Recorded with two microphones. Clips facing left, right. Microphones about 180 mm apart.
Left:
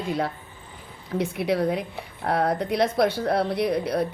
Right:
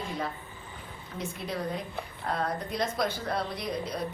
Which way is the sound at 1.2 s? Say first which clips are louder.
Left 10 dB; 70° left (ahead or behind).